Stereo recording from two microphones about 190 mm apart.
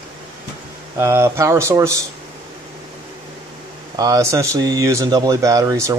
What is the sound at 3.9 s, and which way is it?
Speech, 15° right (ahead or behind).